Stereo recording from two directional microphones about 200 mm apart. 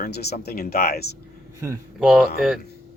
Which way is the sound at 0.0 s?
55° left (ahead or behind).